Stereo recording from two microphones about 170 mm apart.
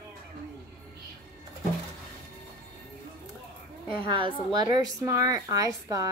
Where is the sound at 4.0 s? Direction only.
30° right (ahead or behind).